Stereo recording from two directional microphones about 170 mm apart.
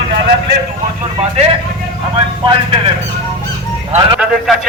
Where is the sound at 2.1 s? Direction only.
30° right (ahead or behind).